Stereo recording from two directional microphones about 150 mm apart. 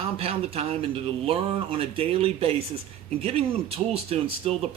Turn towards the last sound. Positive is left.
turn(degrees=-40)  # may be behind; listen again after turning